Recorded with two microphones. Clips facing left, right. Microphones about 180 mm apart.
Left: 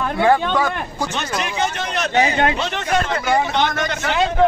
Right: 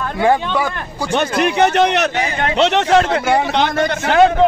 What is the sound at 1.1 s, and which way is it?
Speech, 65° right (ahead or behind).